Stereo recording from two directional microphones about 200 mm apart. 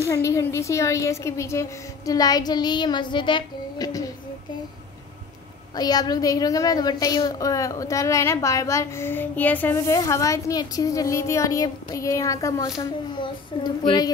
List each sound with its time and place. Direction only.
0.0 s a woman's voice: 15° left (ahead or behind)
5.8 s a woman's voice: 20° left (ahead or behind)